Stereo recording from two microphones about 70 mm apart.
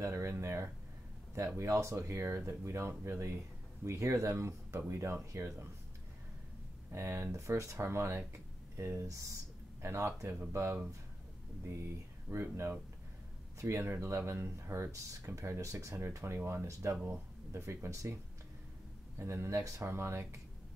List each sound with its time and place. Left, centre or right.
0.0 s speech: right
6.9 s speech: right
8.3 s a sound: right
9.0 s speech: right
12.3 s speech: right
13.6 s speech: right
16.3 s speech: right
16.9 s speech: centre
17.5 s speech: right